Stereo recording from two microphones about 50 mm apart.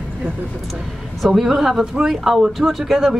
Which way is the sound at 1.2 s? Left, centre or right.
Centre.